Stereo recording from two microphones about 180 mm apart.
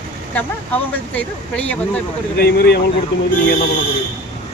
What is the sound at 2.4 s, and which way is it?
Speech, 65° left (ahead or behind).